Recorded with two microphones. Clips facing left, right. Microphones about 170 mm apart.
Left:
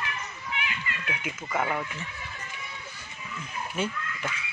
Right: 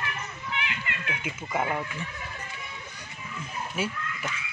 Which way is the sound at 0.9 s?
65° right (ahead or behind).